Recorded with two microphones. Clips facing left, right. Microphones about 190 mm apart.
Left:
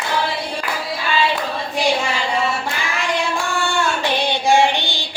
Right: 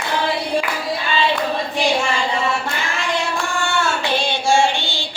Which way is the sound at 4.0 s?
15° left (ahead or behind).